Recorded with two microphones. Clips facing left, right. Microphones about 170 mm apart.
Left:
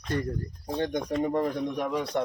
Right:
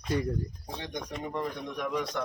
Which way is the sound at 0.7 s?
55° left (ahead or behind).